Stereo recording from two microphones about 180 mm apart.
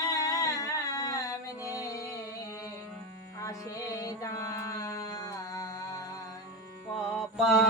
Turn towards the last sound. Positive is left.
turn(degrees=0)  # may be behind; listen again after turning